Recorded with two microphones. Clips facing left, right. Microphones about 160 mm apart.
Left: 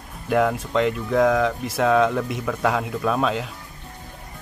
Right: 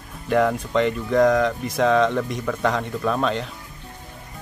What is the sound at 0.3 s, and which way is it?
Speech, centre (ahead or behind).